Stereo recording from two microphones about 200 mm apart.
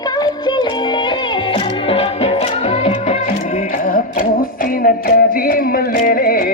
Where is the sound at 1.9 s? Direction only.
30° left (ahead or behind).